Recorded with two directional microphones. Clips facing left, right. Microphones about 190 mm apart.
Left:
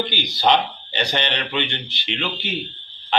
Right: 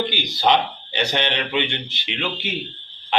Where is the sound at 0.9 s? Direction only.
10° right (ahead or behind).